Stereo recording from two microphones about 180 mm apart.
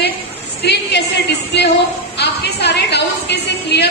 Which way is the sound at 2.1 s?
70° left (ahead or behind).